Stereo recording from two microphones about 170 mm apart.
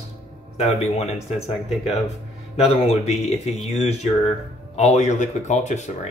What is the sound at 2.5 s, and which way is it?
Speech, 35° left (ahead or behind).